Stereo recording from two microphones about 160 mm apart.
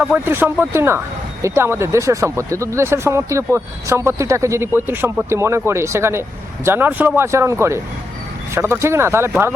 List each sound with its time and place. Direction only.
0.0 s speech: 10° right (ahead or behind)